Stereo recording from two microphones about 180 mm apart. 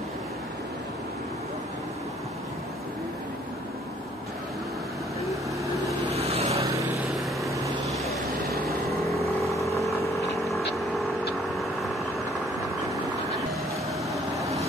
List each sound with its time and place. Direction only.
6.0 s vehicle: 35° right (ahead or behind)
6.6 s vehicle: 15° right (ahead or behind)
7.1 s vehicle: centre (ahead or behind)
7.5 s vehicle: 20° right (ahead or behind)
9.8 s vehicle: centre (ahead or behind)
14.4 s vehicle: 15° right (ahead or behind)